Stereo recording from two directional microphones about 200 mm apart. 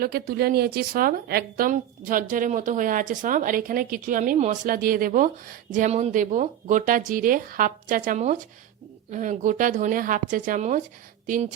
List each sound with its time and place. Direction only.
0.0 s a woman's voice: 50° right (ahead or behind)